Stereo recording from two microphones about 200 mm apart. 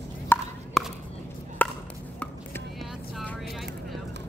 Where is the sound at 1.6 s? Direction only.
10° left (ahead or behind).